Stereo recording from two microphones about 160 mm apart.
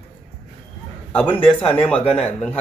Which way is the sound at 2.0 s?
40° left (ahead or behind).